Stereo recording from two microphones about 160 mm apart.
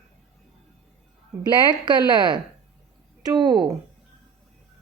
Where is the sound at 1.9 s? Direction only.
30° right (ahead or behind).